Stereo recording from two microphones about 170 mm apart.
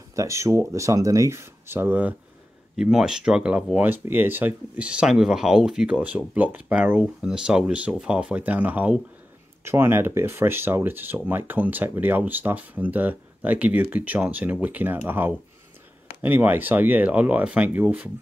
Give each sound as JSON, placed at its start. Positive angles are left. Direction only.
{"t": 0.1, "sound": "speech", "side_deg": -20}